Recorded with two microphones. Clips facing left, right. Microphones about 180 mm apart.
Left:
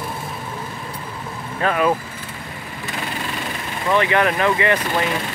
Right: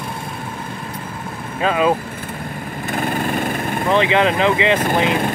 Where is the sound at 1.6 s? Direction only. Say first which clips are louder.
Right 2 dB; 20° right (ahead or behind).